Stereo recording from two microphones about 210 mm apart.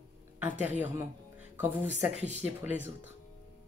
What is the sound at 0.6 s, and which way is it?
Speech, 10° right (ahead or behind).